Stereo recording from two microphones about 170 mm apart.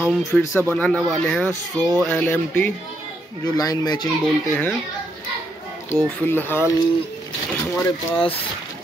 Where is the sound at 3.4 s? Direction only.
20° left (ahead or behind).